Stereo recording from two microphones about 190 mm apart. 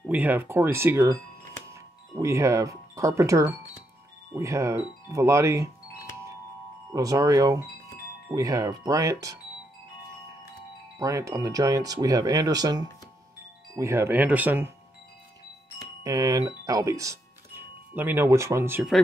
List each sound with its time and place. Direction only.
0.0 s speech: 10° right (ahead or behind)
6.9 s speech: 15° right (ahead or behind)
11.0 s speech: 15° right (ahead or behind)
16.0 s speech: 20° right (ahead or behind)